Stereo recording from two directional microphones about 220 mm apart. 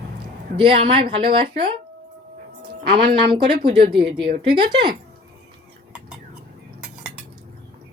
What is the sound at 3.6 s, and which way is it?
Speech, 40° right (ahead or behind).